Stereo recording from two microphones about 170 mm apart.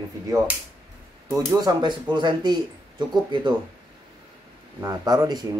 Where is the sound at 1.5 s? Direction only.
25° right (ahead or behind).